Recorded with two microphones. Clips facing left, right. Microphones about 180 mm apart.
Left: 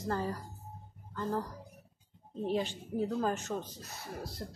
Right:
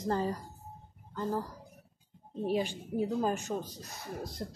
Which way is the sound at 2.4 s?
10° right (ahead or behind).